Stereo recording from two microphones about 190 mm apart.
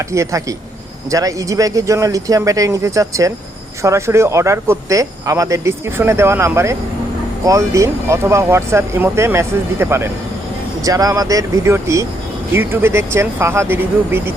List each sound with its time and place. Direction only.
0.1 s speech: 15° right (ahead or behind)